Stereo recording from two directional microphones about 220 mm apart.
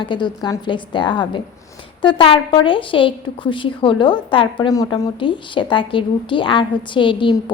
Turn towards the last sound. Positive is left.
turn(degrees=20)  # may be behind; listen again after turning